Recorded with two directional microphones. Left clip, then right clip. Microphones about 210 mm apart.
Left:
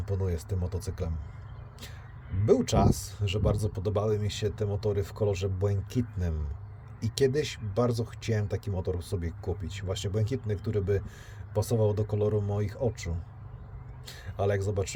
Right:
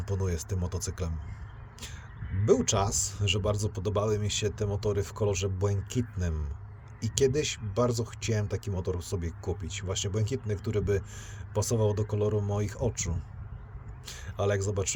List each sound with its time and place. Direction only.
0.0 s speech: 10° right (ahead or behind)
2.4 s speech: 5° right (ahead or behind)